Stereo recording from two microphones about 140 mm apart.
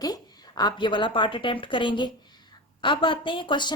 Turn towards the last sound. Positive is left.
turn(degrees=35)  # may be behind; listen again after turning